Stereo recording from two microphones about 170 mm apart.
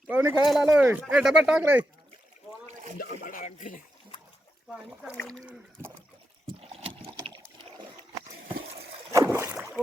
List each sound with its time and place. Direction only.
0.1 s speech: 10° right (ahead or behind)
3.2 s speech: 50° left (ahead or behind)
4.7 s speech: 5° right (ahead or behind)
5.1 s speech: 10° left (ahead or behind)
6.6 s liquid: 35° right (ahead or behind)
9.1 s boat: 15° right (ahead or behind)